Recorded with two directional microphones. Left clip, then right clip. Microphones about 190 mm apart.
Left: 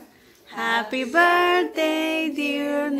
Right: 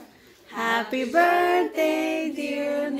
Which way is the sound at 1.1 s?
15° left (ahead or behind).